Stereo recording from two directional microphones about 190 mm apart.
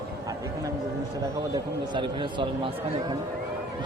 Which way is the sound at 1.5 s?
25° right (ahead or behind).